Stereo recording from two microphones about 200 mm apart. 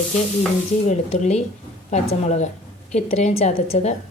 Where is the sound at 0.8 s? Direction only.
35° left (ahead or behind).